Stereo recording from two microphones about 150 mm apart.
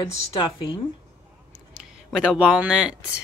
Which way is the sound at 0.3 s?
35° left (ahead or behind).